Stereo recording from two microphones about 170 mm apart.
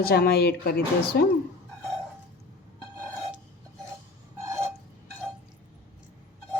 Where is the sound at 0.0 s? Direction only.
65° left (ahead or behind).